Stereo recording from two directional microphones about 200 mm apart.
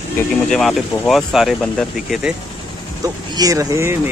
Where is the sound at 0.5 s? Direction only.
Centre (ahead or behind).